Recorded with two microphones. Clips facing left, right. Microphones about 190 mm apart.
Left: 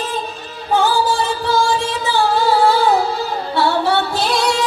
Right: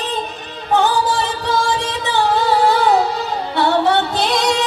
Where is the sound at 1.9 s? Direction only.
20° right (ahead or behind).